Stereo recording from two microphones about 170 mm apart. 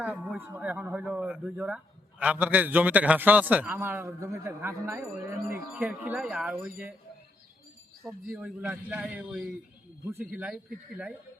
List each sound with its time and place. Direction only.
0.0 s speech: 5° right (ahead or behind)
8.0 s speech: 10° right (ahead or behind)